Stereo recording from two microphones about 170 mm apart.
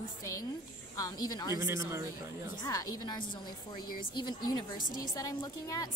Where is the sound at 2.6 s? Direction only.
20° left (ahead or behind).